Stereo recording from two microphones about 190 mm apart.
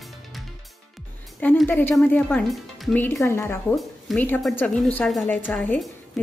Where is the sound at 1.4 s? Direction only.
10° left (ahead or behind).